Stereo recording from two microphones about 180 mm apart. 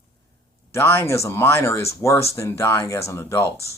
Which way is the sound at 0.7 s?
15° left (ahead or behind).